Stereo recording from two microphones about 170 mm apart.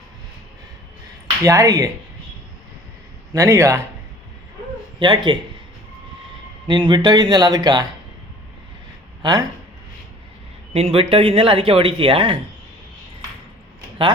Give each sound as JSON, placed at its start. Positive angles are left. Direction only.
{"t": 1.5, "sound": "speech", "side_deg": -20}
{"t": 3.3, "sound": "speech", "side_deg": -15}
{"t": 4.9, "sound": "speech", "side_deg": -25}
{"t": 6.7, "sound": "speech", "side_deg": -25}
{"t": 9.2, "sound": "speech", "side_deg": -20}
{"t": 10.8, "sound": "speech", "side_deg": -35}